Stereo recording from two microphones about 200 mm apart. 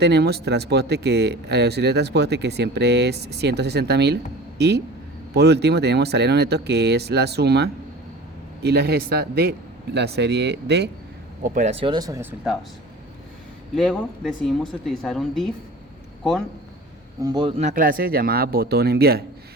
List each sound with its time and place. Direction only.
0.0 s speech: 55° right (ahead or behind)
11.4 s speech: 40° right (ahead or behind)
11.7 s speech: 25° right (ahead or behind)
13.7 s speech: 5° left (ahead or behind)
17.2 s speech: 20° right (ahead or behind)
17.6 s speech: 40° right (ahead or behind)